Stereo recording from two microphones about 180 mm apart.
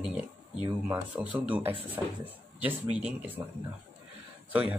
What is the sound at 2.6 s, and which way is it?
Speech, 5° right (ahead or behind).